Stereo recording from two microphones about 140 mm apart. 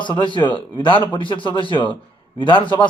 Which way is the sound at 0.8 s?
35° left (ahead or behind).